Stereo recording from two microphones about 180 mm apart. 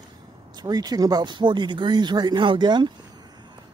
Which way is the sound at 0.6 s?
20° right (ahead or behind).